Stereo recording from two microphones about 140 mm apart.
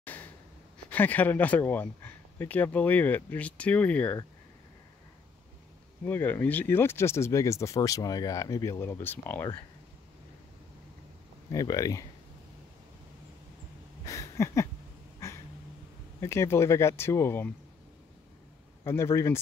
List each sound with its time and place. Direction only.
0.0 s breathing: 15° left (ahead or behind)
0.8 s speech: 10° left (ahead or behind)
6.0 s speech: 15° left (ahead or behind)
11.5 s speech: 25° left (ahead or behind)
14.0 s a sound: 20° left (ahead or behind)
16.2 s speech: 20° left (ahead or behind)
18.9 s speech: 20° left (ahead or behind)